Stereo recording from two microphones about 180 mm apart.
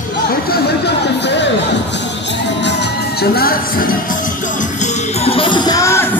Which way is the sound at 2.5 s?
70° left (ahead or behind).